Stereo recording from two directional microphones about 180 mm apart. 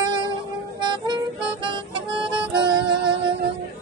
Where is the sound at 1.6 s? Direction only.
25° right (ahead or behind).